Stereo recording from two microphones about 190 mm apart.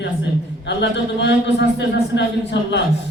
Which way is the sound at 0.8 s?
65° left (ahead or behind).